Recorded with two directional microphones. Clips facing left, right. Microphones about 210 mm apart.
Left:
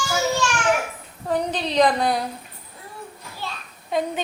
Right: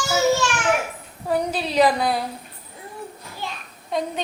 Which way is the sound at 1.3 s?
10° right (ahead or behind).